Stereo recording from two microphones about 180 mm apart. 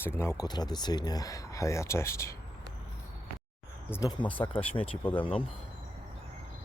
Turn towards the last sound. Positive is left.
turn(degrees=30)  # may be behind; listen again after turning